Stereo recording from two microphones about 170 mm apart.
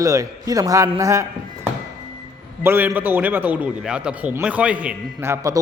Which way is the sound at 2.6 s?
15° right (ahead or behind).